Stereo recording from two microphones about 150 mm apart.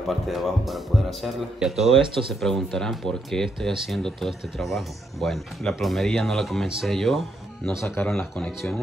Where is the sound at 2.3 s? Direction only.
Centre (ahead or behind).